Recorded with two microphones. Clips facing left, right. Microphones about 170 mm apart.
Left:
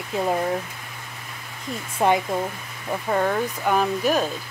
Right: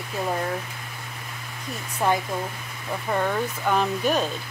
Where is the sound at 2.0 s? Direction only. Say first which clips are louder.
Left 3 dB; 20° left (ahead or behind).